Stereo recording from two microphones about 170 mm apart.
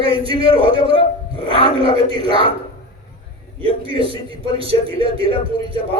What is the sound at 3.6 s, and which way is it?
A man's voice, 30° right (ahead or behind).